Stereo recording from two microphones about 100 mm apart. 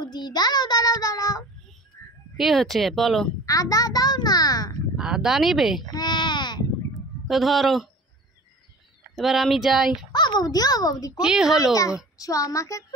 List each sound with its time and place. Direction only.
0.0 s a child's voice: 45° left (ahead or behind)
2.0 s a sound: 25° left (ahead or behind)
2.3 s speech: centre (ahead or behind)
3.4 s a child's voice: 35° left (ahead or behind)
4.9 s speech: 5° right (ahead or behind)
5.9 s a sound: 45° left (ahead or behind)
7.2 s speech: centre (ahead or behind)
9.1 s speech: centre (ahead or behind)
10.1 s a child's voice: 45° left (ahead or behind)
11.1 s speech: 5° right (ahead or behind)
11.7 s a child's voice: 35° left (ahead or behind)